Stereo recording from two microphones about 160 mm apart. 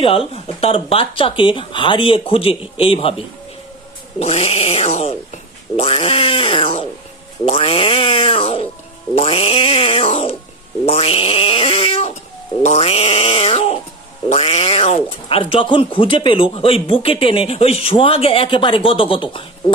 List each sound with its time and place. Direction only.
0.3 s speech: 40° left (ahead or behind)
4.2 s speech: 40° left (ahead or behind)